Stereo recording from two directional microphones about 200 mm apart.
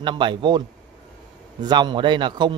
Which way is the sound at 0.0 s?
25° right (ahead or behind).